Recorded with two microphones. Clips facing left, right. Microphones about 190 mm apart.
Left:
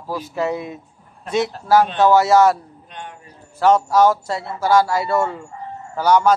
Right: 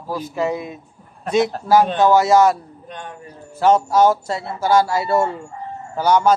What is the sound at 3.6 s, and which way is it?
Speech, 20° right (ahead or behind).